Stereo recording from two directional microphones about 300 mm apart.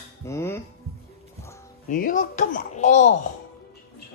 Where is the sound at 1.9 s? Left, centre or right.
Left.